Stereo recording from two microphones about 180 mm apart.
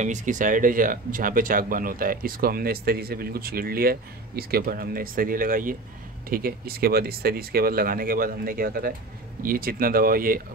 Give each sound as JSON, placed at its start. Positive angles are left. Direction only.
{"t": 0.0, "sound": "speech", "side_deg": -45}